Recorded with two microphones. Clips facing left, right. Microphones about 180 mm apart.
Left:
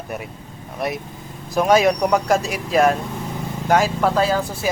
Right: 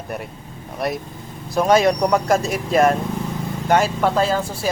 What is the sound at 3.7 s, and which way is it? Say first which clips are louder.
Speech: even; centre (ahead or behind).